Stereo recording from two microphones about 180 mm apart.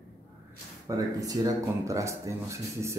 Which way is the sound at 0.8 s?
20° right (ahead or behind).